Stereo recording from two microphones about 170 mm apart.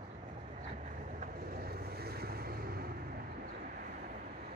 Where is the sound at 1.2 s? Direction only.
60° right (ahead or behind).